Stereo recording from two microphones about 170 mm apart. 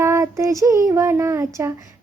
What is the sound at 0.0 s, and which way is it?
Child singing, 15° right (ahead or behind).